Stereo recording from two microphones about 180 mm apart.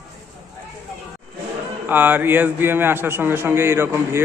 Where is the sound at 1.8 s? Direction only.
10° right (ahead or behind).